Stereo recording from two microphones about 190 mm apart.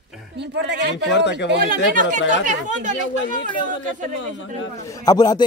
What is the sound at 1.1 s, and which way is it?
Speech, 65° left (ahead or behind).